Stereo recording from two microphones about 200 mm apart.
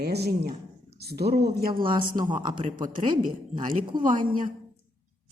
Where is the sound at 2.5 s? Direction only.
25° right (ahead or behind).